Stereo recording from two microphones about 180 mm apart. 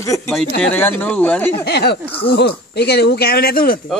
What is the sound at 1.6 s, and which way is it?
Speech, 65° left (ahead or behind).